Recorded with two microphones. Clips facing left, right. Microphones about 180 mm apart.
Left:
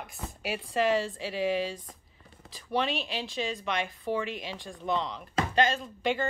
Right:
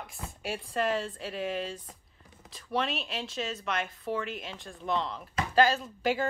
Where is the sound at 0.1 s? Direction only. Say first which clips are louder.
Left 2 dB; centre (ahead or behind).